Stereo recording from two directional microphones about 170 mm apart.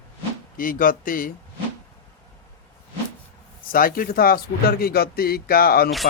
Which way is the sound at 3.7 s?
60° left (ahead or behind).